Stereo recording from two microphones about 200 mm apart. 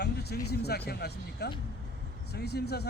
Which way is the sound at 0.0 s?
55° left (ahead or behind).